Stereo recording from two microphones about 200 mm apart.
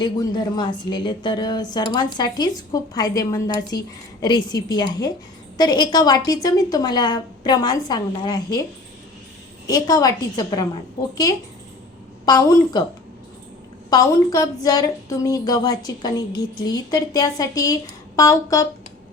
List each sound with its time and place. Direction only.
0.0 s speech: 20° left (ahead or behind)
9.6 s speech: 20° left (ahead or behind)
12.2 s a woman's voice: 20° left (ahead or behind)
13.9 s a woman's voice: 15° left (ahead or behind)